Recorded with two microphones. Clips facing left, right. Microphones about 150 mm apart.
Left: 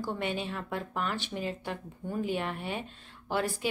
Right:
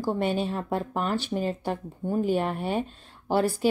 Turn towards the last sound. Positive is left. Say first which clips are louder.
# right 7 dB
turn(degrees=-40)  # may be behind; listen again after turning